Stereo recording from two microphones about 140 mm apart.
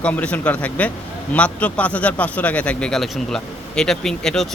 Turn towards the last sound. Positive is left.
turn(degrees=5)  # may be behind; listen again after turning